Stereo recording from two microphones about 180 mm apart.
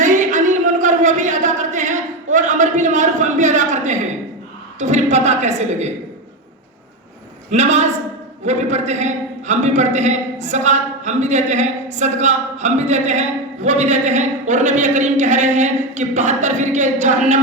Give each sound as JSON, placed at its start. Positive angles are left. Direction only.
{"t": 0.0, "sound": "a sound", "side_deg": -45}
{"t": 4.8, "sound": "a man's voice", "side_deg": -40}
{"t": 7.5, "sound": "a man's voice", "side_deg": -40}